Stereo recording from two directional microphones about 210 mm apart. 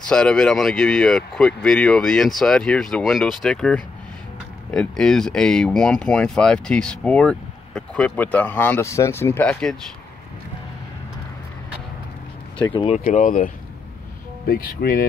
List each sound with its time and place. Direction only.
0.1 s speech: 5° left (ahead or behind)
12.7 s speech: 30° left (ahead or behind)
14.5 s speech: 45° left (ahead or behind)